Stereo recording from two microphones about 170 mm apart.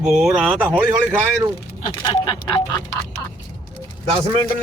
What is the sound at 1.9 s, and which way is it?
Speech, 25° left (ahead or behind).